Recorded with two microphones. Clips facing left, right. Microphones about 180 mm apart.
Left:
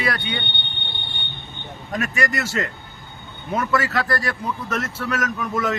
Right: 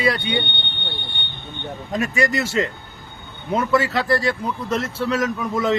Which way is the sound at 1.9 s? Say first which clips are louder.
Right 3 dB; 25° right (ahead or behind).